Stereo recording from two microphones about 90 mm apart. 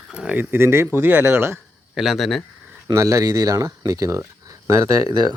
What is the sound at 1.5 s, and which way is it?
Speech, centre (ahead or behind).